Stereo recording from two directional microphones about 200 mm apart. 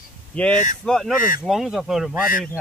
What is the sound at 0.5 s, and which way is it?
Speech, 40° left (ahead or behind).